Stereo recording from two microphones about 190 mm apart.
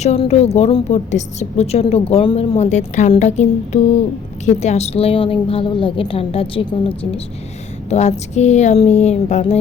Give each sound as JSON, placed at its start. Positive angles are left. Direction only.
{"t": 0.0, "sound": "a woman's voice", "side_deg": 35}